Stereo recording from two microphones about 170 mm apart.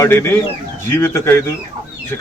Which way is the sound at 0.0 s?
15° left (ahead or behind).